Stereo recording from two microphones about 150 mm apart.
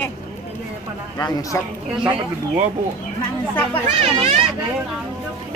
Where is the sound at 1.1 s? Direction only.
25° left (ahead or behind).